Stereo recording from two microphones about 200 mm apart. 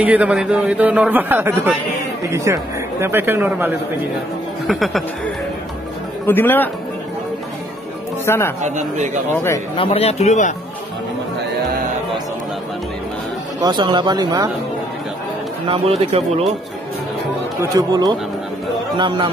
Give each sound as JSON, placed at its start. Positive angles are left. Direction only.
{"t": 0.0, "sound": "a man's voice", "side_deg": -5}
{"t": 4.6, "sound": "speech", "side_deg": 0}
{"t": 8.3, "sound": "speech", "side_deg": 10}
{"t": 8.6, "sound": "a man's voice", "side_deg": -35}
{"t": 9.3, "sound": "speech", "side_deg": 10}
{"t": 9.8, "sound": "speech", "side_deg": 30}
{"t": 13.6, "sound": "speech", "side_deg": -20}
{"t": 15.7, "sound": "speech", "side_deg": -30}
{"t": 17.6, "sound": "speech", "side_deg": -20}